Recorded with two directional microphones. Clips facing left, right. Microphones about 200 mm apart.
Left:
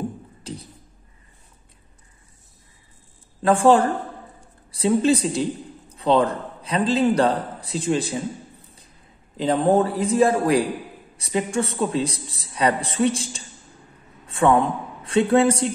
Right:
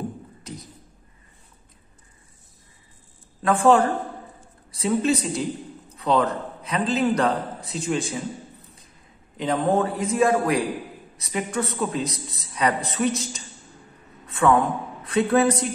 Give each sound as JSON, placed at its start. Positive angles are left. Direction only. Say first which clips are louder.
{"t": 0.4, "sound": "beatboxing", "louder": "left 3 dB", "side_deg": 30}
{"t": 3.4, "sound": "a man's voice", "louder": "left 2 dB", "side_deg": 30}
{"t": 9.4, "sound": "a man's voice", "louder": "left 3 dB", "side_deg": 30}
{"t": 14.2, "sound": "a sound", "louder": "left 1 dB", "side_deg": 30}
{"t": 15.0, "sound": "a woman's voice", "louder": "left 2 dB", "side_deg": 30}